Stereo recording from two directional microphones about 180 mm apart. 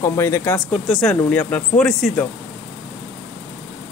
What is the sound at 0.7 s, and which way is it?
Speech, centre (ahead or behind).